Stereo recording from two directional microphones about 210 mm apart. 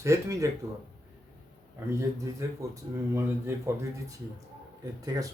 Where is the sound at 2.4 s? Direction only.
15° right (ahead or behind).